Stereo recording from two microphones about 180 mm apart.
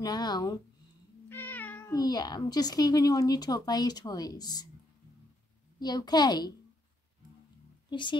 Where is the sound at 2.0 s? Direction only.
20° left (ahead or behind).